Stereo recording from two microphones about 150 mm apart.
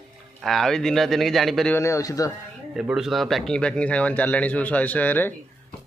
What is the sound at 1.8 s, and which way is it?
Speech, 20° left (ahead or behind).